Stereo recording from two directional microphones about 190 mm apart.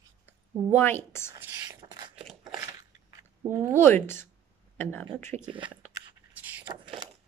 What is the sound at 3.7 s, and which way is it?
A woman's voice, 10° left (ahead or behind).